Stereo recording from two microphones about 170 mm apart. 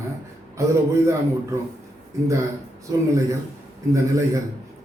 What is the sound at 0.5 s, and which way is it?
Speech, 15° right (ahead or behind).